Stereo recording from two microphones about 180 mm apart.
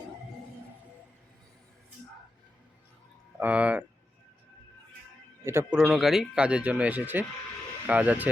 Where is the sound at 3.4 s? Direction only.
5° right (ahead or behind).